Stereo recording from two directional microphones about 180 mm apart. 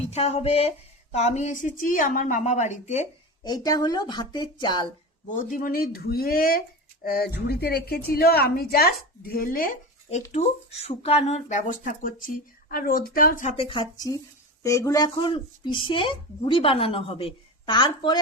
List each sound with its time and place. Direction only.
0.0 s a woman's voice: 35° left (ahead or behind)
3.4 s speech: 20° left (ahead or behind)
5.3 s speech: 45° left (ahead or behind)
10.8 s speech: 35° left (ahead or behind); by 13.5 s 50° left (ahead or behind)
13.6 s speech: 30° left (ahead or behind)